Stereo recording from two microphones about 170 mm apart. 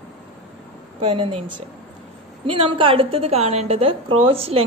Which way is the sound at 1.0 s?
35° right (ahead or behind).